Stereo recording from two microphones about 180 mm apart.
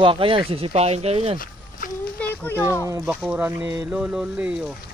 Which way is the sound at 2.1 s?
10° left (ahead or behind).